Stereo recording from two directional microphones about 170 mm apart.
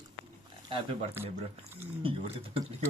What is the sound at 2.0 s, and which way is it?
Speech, 35° right (ahead or behind).